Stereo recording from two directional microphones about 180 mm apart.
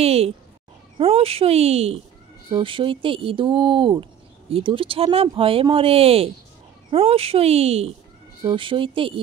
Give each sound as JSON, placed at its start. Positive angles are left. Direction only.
{"t": 0.0, "sound": "speech", "side_deg": -35}